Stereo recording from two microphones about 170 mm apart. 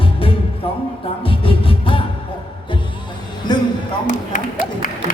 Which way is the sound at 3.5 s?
25° left (ahead or behind).